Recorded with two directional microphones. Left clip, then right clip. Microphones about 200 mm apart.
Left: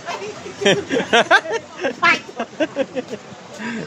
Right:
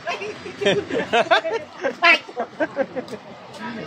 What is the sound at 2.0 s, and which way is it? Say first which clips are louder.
Speech: right 1 dB; 55° left (ahead or behind).